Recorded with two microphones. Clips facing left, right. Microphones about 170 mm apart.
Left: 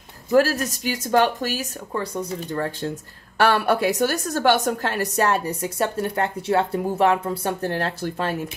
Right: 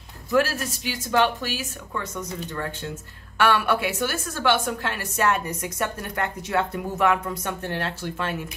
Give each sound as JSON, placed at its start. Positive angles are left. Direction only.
{"t": 0.3, "sound": "a woman's voice", "side_deg": 40}